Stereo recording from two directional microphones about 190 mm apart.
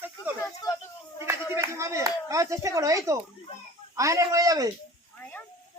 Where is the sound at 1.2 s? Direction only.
15° right (ahead or behind).